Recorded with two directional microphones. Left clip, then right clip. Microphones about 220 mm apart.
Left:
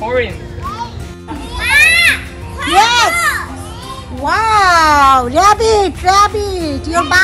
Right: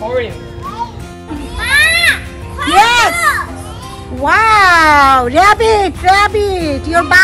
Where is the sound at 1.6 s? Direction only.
20° right (ahead or behind).